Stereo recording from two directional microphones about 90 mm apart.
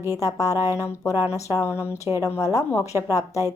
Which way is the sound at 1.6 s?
30° left (ahead or behind).